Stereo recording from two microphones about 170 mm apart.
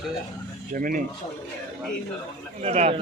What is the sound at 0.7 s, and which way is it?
Speech, 55° right (ahead or behind).